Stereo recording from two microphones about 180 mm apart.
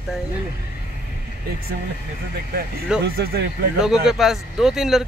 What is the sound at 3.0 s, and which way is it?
Speech, 60° right (ahead or behind).